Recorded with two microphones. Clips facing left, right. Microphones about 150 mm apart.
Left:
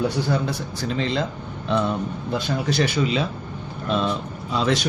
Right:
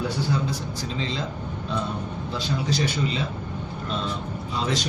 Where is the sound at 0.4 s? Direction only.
65° left (ahead or behind).